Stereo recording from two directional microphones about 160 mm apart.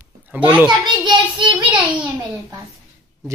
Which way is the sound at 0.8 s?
25° right (ahead or behind).